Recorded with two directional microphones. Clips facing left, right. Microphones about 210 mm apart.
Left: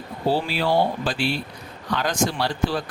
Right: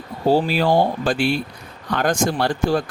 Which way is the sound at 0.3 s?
45° right (ahead or behind).